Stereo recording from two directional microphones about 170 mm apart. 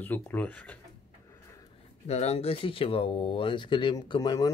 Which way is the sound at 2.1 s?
40° left (ahead or behind).